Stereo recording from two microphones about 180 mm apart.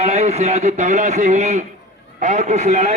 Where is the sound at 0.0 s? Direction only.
35° right (ahead or behind).